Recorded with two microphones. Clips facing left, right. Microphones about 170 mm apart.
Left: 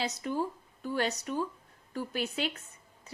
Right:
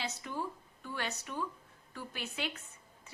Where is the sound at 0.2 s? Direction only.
40° left (ahead or behind).